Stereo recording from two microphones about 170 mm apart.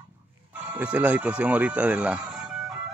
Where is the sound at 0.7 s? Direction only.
10° right (ahead or behind).